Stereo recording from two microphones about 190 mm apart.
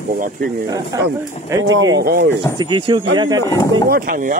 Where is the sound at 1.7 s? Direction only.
90° right.